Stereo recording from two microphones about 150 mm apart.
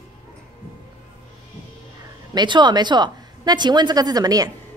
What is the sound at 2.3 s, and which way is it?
A woman's voice, 30° right (ahead or behind).